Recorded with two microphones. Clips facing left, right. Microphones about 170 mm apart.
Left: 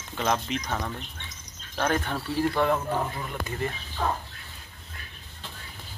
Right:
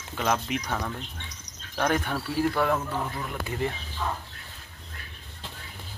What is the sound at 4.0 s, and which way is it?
Dog, 55° left (ahead or behind).